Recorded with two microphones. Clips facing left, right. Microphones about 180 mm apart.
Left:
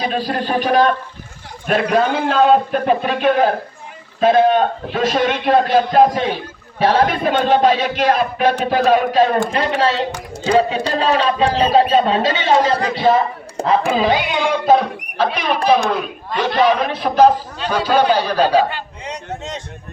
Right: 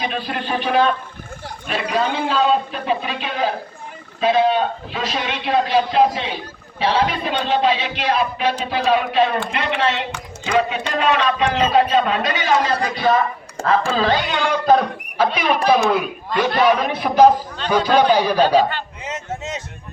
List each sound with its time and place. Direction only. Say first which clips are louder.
0.0 s a man's voice: left 4 dB; 35° left (ahead or behind)
1.6 s a man's voice: left 6 dB; 50° left (ahead or behind); by 13.2 s 25° left (ahead or behind)
13.6 s speech: left 2 dB; 15° left (ahead or behind)
15.2 s speech: even; 5° right (ahead or behind)
18.3 s speech: even; 10° left (ahead or behind)
19.0 s speech: left 1 dB; 5° right (ahead or behind)